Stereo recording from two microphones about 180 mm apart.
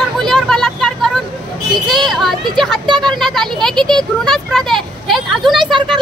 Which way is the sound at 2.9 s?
25° right (ahead or behind).